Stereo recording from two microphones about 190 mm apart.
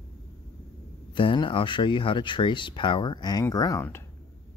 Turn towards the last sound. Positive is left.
turn(degrees=15)  # may be behind; listen again after turning